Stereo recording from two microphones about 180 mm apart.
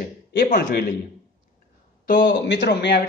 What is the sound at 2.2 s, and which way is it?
Speech, 75° left (ahead or behind).